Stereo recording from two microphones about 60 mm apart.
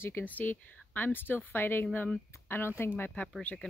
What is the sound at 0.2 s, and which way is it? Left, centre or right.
Speech, left.